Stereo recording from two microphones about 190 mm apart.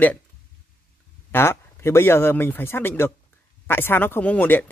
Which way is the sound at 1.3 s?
10° left (ahead or behind).